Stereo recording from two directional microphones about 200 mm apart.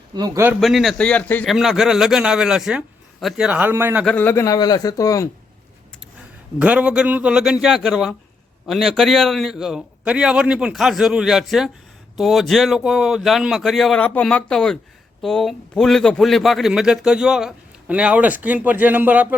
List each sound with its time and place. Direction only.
0.1 s speech: 15° right (ahead or behind)
0.6 s a man's voice: centre (ahead or behind)
4.0 s speech: 5° left (ahead or behind)
6.6 s a man's voice: 5° right (ahead or behind)